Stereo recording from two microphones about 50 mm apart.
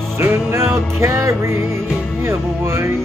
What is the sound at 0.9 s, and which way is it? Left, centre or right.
Music, right.